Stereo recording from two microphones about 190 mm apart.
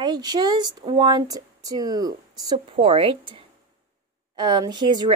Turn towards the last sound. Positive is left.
turn(degrees=-25)  # may be behind; listen again after turning